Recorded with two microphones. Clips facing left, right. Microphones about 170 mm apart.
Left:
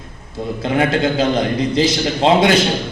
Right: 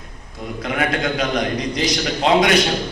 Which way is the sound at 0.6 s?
25° left (ahead or behind).